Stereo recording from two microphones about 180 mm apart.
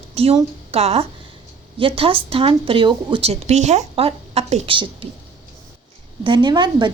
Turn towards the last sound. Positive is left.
turn(degrees=-25)  # may be behind; listen again after turning